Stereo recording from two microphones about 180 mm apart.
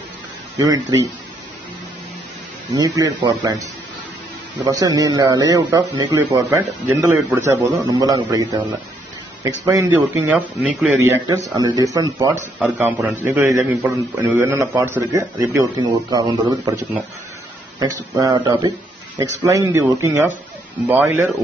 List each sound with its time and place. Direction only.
0.6 s a man's voice: 20° right (ahead or behind)
2.7 s a man's voice: 20° right (ahead or behind)
4.6 s a man's voice: 20° right (ahead or behind)
9.7 s a man's voice: 15° right (ahead or behind)
11.0 s a man's voice: 15° right (ahead or behind)
12.5 s speech: centre (ahead or behind)
13.1 s a man's voice: 15° right (ahead or behind)
18.1 s a man's voice: 20° right (ahead or behind)